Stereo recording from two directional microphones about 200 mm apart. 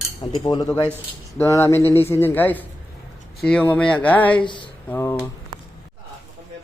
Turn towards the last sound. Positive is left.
turn(degrees=10)  # may be behind; listen again after turning